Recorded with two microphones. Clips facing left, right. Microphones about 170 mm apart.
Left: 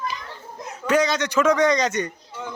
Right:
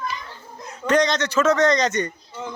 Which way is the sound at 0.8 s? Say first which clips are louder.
Right 1 dB; 5° left (ahead or behind).